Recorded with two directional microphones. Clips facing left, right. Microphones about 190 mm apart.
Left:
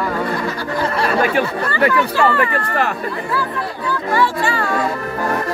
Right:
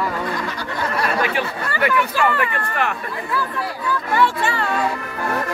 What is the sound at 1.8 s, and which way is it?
Speech, 35° left (ahead or behind).